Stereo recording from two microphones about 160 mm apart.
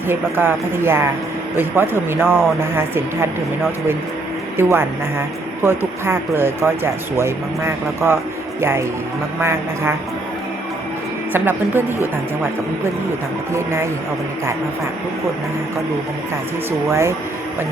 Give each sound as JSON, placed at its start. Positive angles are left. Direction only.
{"t": 0.1, "sound": "speech", "side_deg": -15}
{"t": 4.5, "sound": "speech", "side_deg": -15}
{"t": 9.4, "sound": "speech", "side_deg": -15}
{"t": 11.3, "sound": "speech", "side_deg": -15}
{"t": 16.9, "sound": "speech", "side_deg": -20}